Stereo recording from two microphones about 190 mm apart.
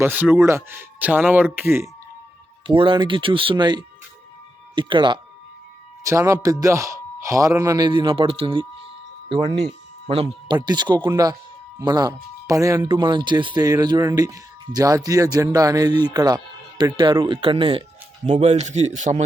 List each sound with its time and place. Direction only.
0.0 s speech: 10° right (ahead or behind)
2.6 s speech: 25° right (ahead or behind)
9.6 s a man's voice: 30° right (ahead or behind)